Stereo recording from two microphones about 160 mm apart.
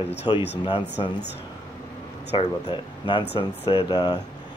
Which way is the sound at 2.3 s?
30° left (ahead or behind).